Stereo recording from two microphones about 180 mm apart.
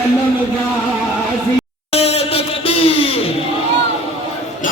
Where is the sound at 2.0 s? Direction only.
35° left (ahead or behind).